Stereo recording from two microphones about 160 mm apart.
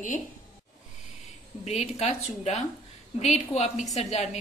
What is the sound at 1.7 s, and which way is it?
A woman's voice, 45° left (ahead or behind).